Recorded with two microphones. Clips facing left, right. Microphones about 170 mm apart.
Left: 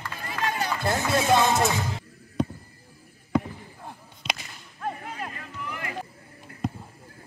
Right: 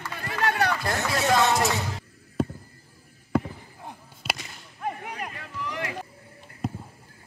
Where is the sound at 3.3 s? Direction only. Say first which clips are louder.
Even; 5° right (ahead or behind).